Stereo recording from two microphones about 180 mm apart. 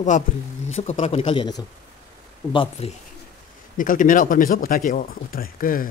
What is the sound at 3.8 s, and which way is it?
Speech, 50° left (ahead or behind).